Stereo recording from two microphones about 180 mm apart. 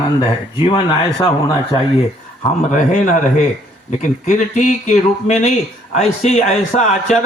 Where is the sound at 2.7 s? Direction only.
45° left (ahead or behind).